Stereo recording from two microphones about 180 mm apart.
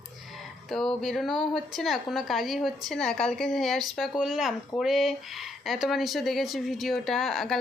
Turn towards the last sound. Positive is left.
turn(degrees=0)  # may be behind; listen again after turning